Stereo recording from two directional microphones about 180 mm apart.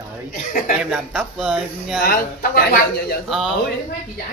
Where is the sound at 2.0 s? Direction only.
55° left (ahead or behind).